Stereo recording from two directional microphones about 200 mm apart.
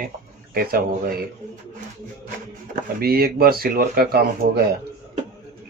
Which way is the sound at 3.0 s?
50° right (ahead or behind).